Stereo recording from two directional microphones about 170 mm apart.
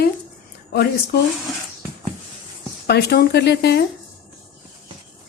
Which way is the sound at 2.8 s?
70° left (ahead or behind).